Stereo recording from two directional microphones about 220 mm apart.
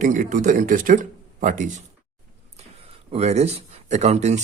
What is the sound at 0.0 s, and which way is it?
Speech, 35° right (ahead or behind).